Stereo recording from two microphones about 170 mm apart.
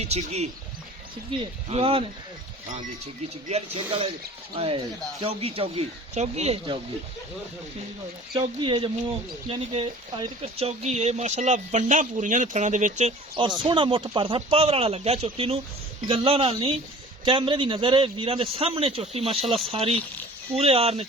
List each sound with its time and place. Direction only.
0.0 s a man's voice: 40° right (ahead or behind)
3.5 s a man's voice: 30° right (ahead or behind)
5.2 s a man's voice: 35° right (ahead or behind)
8.3 s a man's voice: 30° right (ahead or behind)